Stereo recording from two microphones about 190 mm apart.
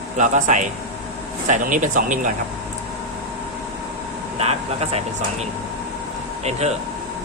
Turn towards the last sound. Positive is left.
turn(degrees=-35)  # may be behind; listen again after turning